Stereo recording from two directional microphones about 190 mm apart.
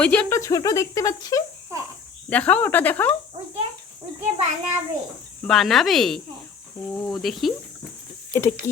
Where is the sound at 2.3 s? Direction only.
5° left (ahead or behind).